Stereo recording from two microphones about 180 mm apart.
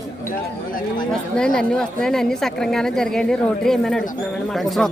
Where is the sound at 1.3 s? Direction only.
5° left (ahead or behind).